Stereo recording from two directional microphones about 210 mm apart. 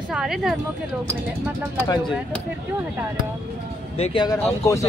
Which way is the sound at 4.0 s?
25° left (ahead or behind).